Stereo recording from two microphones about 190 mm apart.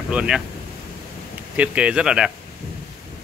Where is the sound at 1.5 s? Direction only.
5° right (ahead or behind).